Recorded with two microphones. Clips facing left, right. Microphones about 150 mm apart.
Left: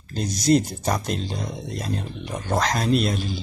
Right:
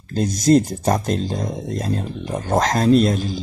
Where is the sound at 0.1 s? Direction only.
45° right (ahead or behind).